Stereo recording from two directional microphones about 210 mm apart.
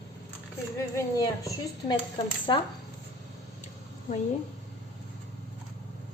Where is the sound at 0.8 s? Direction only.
15° left (ahead or behind).